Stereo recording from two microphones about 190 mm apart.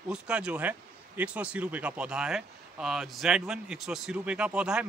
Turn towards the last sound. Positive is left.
turn(degrees=-5)  # may be behind; listen again after turning